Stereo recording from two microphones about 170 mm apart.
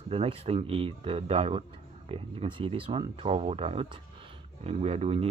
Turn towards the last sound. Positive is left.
turn(degrees=-35)  # may be behind; listen again after turning